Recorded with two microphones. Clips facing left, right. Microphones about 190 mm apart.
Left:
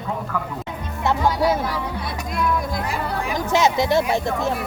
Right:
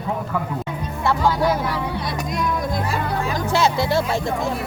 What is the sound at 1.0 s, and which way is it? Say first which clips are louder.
Speech: even; 20° left (ahead or behind).